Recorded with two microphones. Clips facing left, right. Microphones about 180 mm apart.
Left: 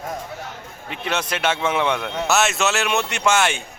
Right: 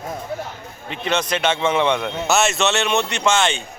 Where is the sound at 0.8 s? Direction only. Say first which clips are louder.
Right 3 dB; 5° left (ahead or behind).